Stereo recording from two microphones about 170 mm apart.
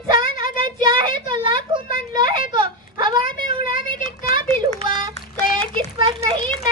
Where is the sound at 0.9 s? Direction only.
30° right (ahead or behind).